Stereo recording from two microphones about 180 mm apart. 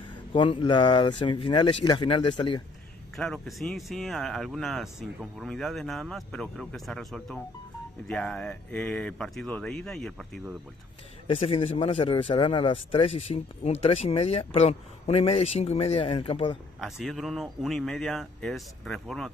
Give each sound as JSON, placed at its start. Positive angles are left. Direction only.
{"t": 0.3, "sound": "speech", "side_deg": 25}
{"t": 3.2, "sound": "speech", "side_deg": 0}
{"t": 11.2, "sound": "a man's voice", "side_deg": 35}
{"t": 16.8, "sound": "speech", "side_deg": 0}